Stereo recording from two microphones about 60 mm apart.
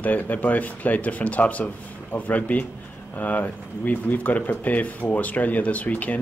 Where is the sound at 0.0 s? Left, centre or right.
Left.